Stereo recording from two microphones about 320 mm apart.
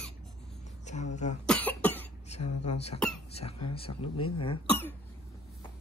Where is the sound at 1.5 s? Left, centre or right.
Centre.